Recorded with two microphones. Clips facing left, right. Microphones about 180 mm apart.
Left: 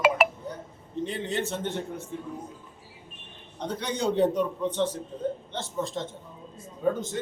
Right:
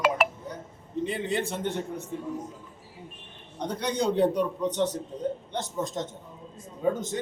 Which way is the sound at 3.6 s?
10° right (ahead or behind).